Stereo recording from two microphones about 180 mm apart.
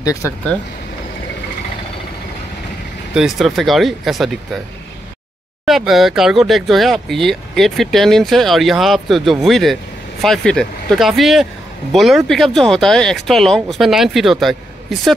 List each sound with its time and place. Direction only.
0.0 s speech: 20° left (ahead or behind)
3.2 s speech: centre (ahead or behind)
5.7 s speech: centre (ahead or behind)